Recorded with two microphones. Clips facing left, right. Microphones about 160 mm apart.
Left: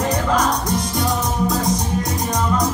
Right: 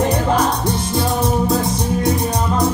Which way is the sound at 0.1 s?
30° right (ahead or behind).